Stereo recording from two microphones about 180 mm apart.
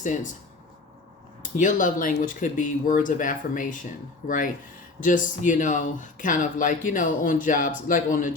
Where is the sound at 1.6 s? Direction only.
45° left (ahead or behind).